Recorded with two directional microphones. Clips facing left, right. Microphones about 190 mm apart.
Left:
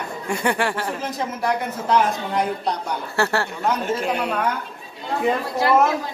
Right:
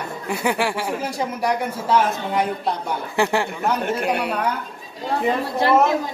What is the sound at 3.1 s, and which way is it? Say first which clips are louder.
Speech: right 2 dB; 15° right (ahead or behind).